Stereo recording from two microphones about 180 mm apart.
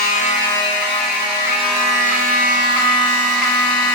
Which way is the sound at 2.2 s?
50° right (ahead or behind).